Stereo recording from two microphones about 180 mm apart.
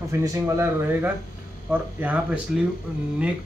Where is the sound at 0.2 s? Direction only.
15° right (ahead or behind).